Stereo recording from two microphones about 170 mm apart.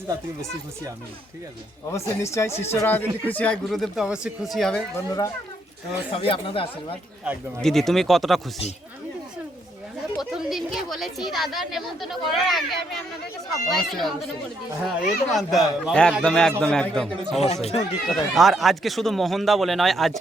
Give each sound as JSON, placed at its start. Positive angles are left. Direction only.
{"t": 1.9, "sound": "speech", "side_deg": 15}
{"t": 4.9, "sound": "speech", "side_deg": 20}
{"t": 6.1, "sound": "speech", "side_deg": 35}
{"t": 7.6, "sound": "speech", "side_deg": 0}
{"t": 10.2, "sound": "speech", "side_deg": 0}
{"t": 17.4, "sound": "speech", "side_deg": 40}
{"t": 18.0, "sound": "speech", "side_deg": 0}